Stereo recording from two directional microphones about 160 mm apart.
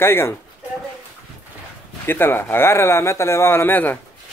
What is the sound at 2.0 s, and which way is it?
Speech, 15° left (ahead or behind).